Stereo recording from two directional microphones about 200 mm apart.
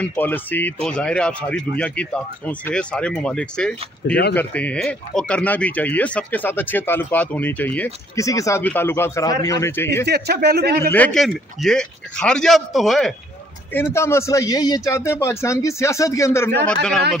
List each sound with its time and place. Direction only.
0.0 s speech: 10° left (ahead or behind)
4.1 s speech: 60° left (ahead or behind)
4.4 s speech: 5° left (ahead or behind)
10.0 s speech: 55° right (ahead or behind)
11.1 s speech: centre (ahead or behind)
13.7 s speech: 10° left (ahead or behind)